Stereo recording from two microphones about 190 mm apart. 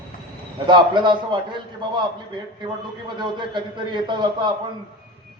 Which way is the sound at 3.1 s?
25° right (ahead or behind).